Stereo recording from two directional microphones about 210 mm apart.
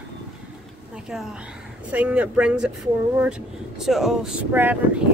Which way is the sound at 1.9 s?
5° right (ahead or behind).